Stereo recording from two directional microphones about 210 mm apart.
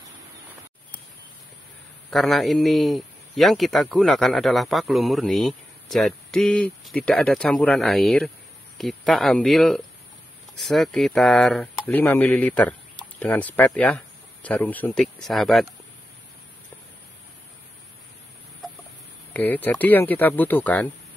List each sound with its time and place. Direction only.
2.0 s a man's voice: centre (ahead or behind)
19.3 s speech: 10° left (ahead or behind)